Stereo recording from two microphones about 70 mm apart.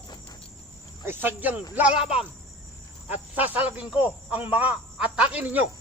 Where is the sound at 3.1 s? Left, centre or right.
Right.